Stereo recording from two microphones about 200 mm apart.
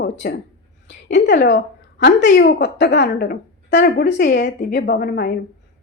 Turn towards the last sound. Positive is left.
turn(degrees=50)  # may be behind; listen again after turning